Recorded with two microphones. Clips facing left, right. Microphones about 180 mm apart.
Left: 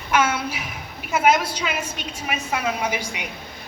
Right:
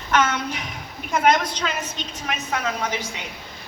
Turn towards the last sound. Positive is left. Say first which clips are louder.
# left 1 dB
turn(degrees=10)  # may be behind; listen again after turning